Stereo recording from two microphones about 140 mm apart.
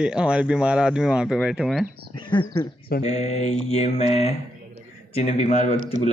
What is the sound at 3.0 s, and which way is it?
Mantra, 50° left (ahead or behind).